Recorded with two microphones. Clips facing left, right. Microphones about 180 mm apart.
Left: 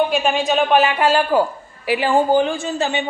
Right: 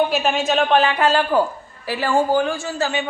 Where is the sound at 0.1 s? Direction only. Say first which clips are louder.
Left 1 dB; centre (ahead or behind).